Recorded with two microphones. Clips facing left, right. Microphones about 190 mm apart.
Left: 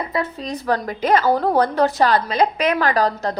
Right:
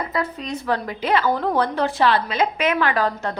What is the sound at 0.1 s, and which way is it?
A woman's voice, 30° left (ahead or behind).